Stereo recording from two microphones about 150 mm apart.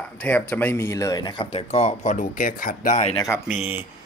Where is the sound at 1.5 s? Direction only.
45° left (ahead or behind).